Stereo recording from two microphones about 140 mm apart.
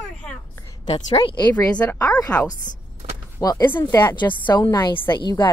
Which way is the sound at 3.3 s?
25° left (ahead or behind).